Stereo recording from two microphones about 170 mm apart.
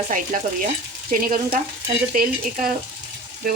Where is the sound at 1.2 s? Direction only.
55° right (ahead or behind).